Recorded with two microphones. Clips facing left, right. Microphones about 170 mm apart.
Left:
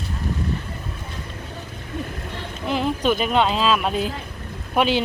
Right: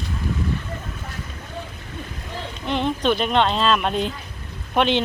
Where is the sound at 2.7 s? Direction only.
5° left (ahead or behind).